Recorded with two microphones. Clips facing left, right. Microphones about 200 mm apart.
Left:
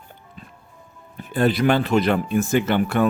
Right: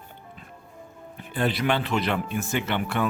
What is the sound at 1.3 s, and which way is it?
Speech, 45° left (ahead or behind).